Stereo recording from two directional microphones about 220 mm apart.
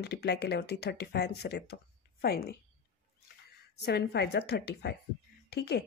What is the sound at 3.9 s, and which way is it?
A woman's voice, 50° left (ahead or behind).